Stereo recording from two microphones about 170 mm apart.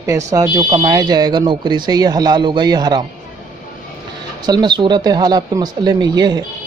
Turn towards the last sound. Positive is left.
turn(degrees=-25)  # may be behind; listen again after turning